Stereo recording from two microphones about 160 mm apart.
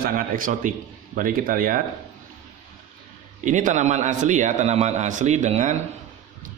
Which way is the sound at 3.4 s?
50° right (ahead or behind).